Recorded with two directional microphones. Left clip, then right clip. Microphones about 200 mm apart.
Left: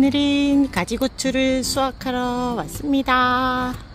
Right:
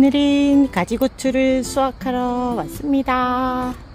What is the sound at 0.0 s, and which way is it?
Speech, 20° right (ahead or behind).